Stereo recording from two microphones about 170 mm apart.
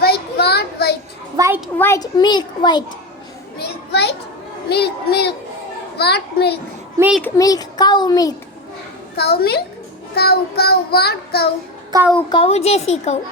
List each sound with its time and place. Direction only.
0.0 s child singing: 70° left (ahead or behind)
1.4 s a sound: 15° right (ahead or behind)
1.8 s a child's voice: 20° left (ahead or behind)
3.6 s a sound: 85° left
4.7 s child singing: 70° left (ahead or behind)
7.2 s a child's voice: 15° left (ahead or behind)
9.1 s child singing: 70° left (ahead or behind)
11.9 s a woman's voice: 25° right (ahead or behind)
12.3 s a woman's voice: 35° left (ahead or behind)